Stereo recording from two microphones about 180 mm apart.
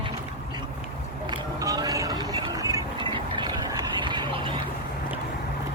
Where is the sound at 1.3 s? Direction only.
20° right (ahead or behind).